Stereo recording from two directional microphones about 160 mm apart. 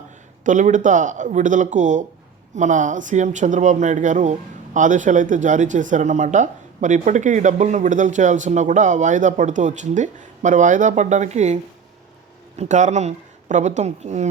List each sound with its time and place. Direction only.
0.4 s speech: 50° right (ahead or behind)